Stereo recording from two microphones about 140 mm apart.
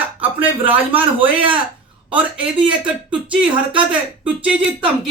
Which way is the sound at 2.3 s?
35° right (ahead or behind).